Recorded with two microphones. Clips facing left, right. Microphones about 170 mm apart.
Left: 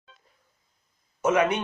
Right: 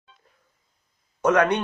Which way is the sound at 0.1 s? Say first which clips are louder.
Right 2 dB; 90° left.